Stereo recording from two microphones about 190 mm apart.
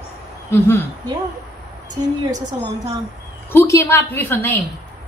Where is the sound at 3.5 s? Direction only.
15° left (ahead or behind).